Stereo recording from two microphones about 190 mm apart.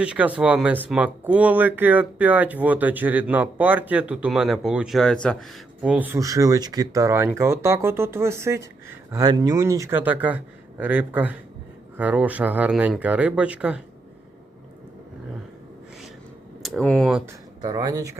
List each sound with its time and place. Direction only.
0.0 s speech: 5° right (ahead or behind)
5.8 s speech: 10° right (ahead or behind)
16.6 s speech: 5° left (ahead or behind)
17.6 s speech: 20° right (ahead or behind)